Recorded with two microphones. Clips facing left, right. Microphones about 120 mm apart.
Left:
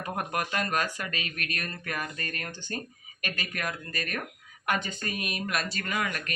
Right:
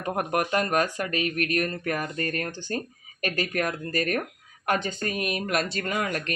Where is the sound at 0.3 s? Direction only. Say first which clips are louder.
Right 6 dB; 25° right (ahead or behind).